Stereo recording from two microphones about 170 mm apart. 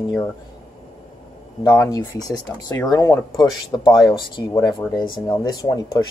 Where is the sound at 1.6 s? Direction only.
20° left (ahead or behind).